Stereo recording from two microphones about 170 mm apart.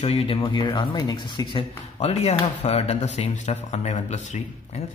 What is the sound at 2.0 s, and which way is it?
Speech, 40° left (ahead or behind).